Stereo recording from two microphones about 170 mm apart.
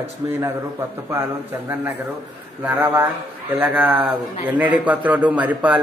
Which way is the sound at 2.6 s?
15° right (ahead or behind).